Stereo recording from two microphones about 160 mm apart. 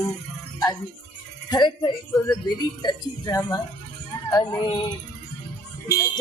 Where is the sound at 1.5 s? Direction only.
25° left (ahead or behind).